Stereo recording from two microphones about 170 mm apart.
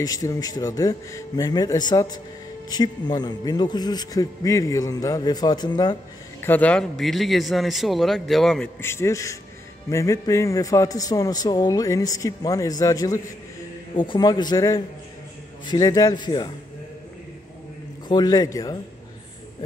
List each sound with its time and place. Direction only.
0.0 s a man's voice: 20° left (ahead or behind)
6.4 s a man's voice: 10° left (ahead or behind)
8.8 s a man's voice: 15° left (ahead or behind)
18.0 s a man's voice: 25° left (ahead or behind)